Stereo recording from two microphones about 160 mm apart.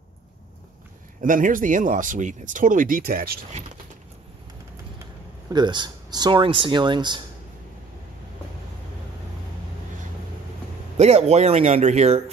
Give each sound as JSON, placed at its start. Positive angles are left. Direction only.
{"t": 1.2, "sound": "speech", "side_deg": -55}
{"t": 5.5, "sound": "speech", "side_deg": -30}
{"t": 11.0, "sound": "speech", "side_deg": -40}